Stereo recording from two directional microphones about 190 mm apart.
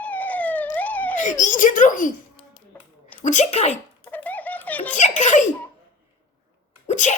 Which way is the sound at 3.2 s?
40° left (ahead or behind).